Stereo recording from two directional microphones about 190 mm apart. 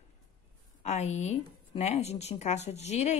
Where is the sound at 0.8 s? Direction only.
35° left (ahead or behind).